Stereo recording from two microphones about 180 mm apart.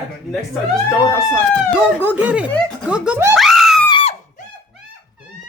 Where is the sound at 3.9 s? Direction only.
30° left (ahead or behind).